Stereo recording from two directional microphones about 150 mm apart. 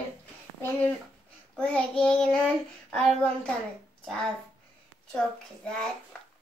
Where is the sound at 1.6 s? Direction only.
5° left (ahead or behind).